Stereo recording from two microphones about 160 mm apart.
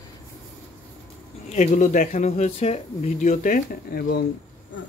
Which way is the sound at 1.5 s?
50° left (ahead or behind).